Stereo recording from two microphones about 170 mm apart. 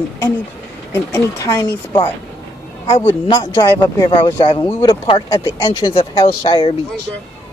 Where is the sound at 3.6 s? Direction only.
15° left (ahead or behind).